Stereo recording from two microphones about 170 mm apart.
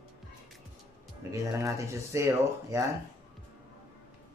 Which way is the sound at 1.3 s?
20° right (ahead or behind).